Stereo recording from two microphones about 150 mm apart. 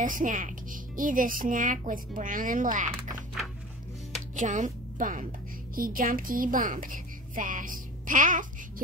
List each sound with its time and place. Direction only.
0.0 s speech: 60° right (ahead or behind)
4.4 s a woman's voice: 55° right (ahead or behind)